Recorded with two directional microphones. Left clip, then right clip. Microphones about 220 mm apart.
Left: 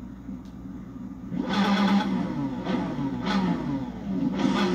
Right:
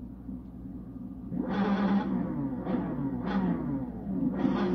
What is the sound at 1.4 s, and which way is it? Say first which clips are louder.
Music: left 6 dB; 25° left (ahead or behind).